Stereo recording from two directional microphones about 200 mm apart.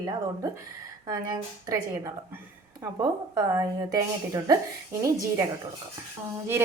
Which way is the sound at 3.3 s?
15° right (ahead or behind).